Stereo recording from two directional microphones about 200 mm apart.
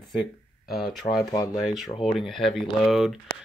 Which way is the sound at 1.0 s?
25° left (ahead or behind).